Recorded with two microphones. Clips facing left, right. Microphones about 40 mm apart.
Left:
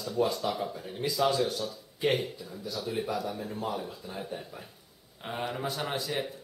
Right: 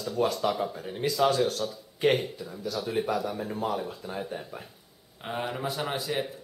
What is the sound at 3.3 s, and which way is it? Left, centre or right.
Speech, right.